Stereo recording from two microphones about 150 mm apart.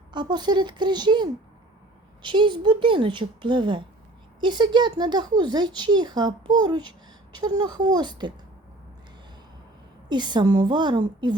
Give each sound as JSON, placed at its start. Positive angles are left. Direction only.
{"t": 0.1, "sound": "a woman's voice", "side_deg": -30}
{"t": 10.1, "sound": "speech", "side_deg": -30}